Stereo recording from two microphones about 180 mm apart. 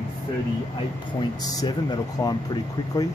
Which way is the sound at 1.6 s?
25° left (ahead or behind).